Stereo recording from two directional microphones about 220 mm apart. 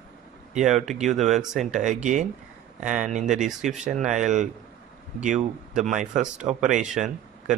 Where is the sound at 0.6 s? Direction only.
Centre (ahead or behind).